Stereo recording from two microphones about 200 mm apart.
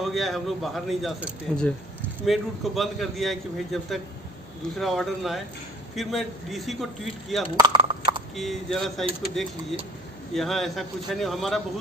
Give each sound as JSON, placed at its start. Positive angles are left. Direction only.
{"t": 0.0, "sound": "a man's voice", "side_deg": 0}
{"t": 7.6, "sound": "a sound", "side_deg": -25}
{"t": 8.4, "sound": "a man's voice", "side_deg": 0}
{"t": 10.3, "sound": "a man's voice", "side_deg": 0}